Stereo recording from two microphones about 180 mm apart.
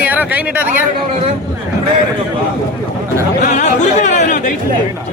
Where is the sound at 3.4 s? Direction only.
45° left (ahead or behind).